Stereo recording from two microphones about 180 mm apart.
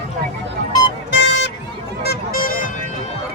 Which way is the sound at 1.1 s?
90° left.